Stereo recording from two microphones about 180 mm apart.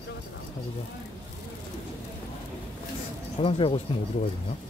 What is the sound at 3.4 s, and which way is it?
Speech, 30° left (ahead or behind).